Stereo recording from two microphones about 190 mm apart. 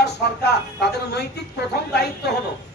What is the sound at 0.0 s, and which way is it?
A woman's voice, 60° left (ahead or behind).